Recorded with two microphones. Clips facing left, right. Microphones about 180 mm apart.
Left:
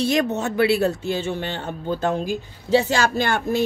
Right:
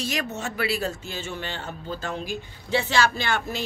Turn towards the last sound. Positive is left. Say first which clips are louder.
# left 7 dB
turn(degrees=50)  # may be behind; listen again after turning